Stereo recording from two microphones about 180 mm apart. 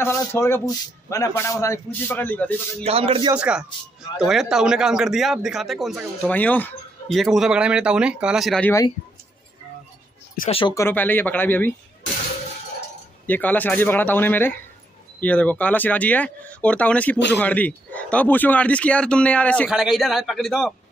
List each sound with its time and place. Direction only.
0.0 s speech: 15° left (ahead or behind)
2.8 s speech: 30° right (ahead or behind)
3.3 s speech: 5° right (ahead or behind)
6.3 s speech: 10° left (ahead or behind)
10.7 s speech: 15° left (ahead or behind)
13.3 s speech: 10° left (ahead or behind)